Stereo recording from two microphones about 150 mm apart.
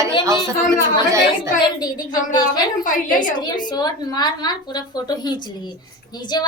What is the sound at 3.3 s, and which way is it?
A woman's voice, 30° left (ahead or behind).